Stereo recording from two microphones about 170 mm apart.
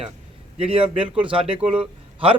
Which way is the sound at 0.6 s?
35° right (ahead or behind).